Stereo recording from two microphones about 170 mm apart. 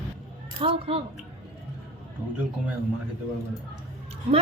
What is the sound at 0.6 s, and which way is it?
Speech, 35° right (ahead or behind).